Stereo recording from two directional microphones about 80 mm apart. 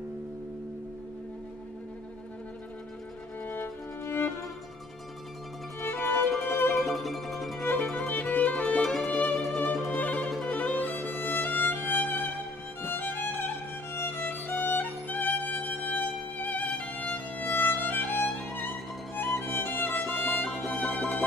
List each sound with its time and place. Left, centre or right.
3.4 s music: left
5.9 s music: left
6.3 s music: centre
8.1 s music: left
8.6 s music: centre
9.9 s music: centre
19.3 s music: left
20.6 s music: centre